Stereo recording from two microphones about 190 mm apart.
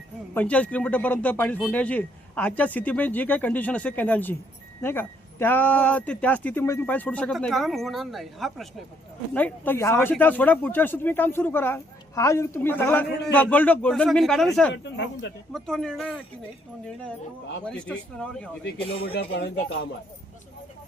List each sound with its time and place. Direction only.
0.3 s speech: 5° left (ahead or behind)
14.7 s speech: 65° left (ahead or behind)
15.5 s speech: centre (ahead or behind)
17.7 s speech: 5° left (ahead or behind)
19.1 s speech: 60° left (ahead or behind)